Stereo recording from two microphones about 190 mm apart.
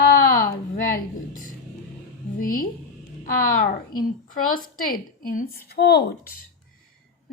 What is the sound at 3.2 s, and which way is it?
A woman's voice, 45° left (ahead or behind).